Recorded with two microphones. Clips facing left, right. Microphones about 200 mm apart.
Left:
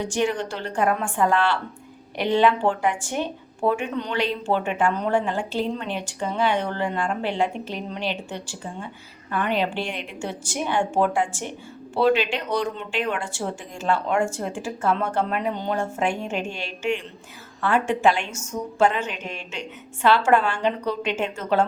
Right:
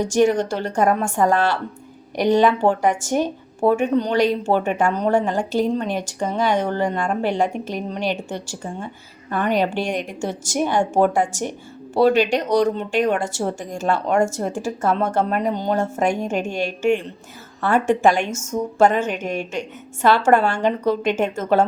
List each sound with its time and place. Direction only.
0.0 s a woman's voice: 45° right (ahead or behind)